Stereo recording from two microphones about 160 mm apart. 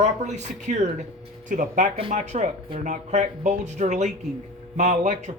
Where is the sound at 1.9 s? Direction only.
40° right (ahead or behind).